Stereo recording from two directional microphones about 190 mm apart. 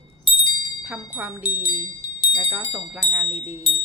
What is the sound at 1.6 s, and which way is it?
Wind chime, 20° left (ahead or behind).